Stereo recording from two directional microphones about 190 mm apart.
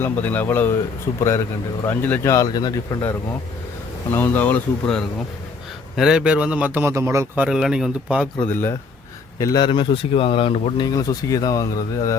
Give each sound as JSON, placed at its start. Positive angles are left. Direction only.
{"t": 0.0, "sound": "speech", "side_deg": 10}
{"t": 6.0, "sound": "a man's voice", "side_deg": -5}
{"t": 7.4, "sound": "a man's voice", "side_deg": -5}
{"t": 9.4, "sound": "speech", "side_deg": 20}